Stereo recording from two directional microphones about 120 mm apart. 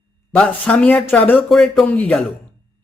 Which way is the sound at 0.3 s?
10° left (ahead or behind).